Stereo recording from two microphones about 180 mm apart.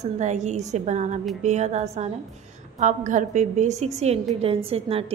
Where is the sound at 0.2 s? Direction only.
40° right (ahead or behind).